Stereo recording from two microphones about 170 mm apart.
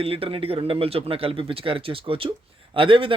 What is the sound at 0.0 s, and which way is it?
A man's voice, 35° right (ahead or behind).